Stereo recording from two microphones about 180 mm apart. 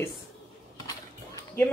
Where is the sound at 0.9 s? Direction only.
20° left (ahead or behind).